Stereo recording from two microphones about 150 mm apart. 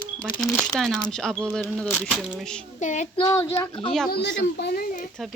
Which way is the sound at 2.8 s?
55° left (ahead or behind).